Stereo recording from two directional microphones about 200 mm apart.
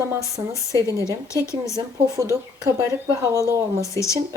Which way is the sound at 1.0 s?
15° left (ahead or behind).